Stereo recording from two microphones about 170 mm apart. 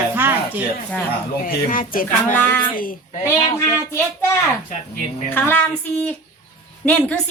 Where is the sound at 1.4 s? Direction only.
55° left (ahead or behind).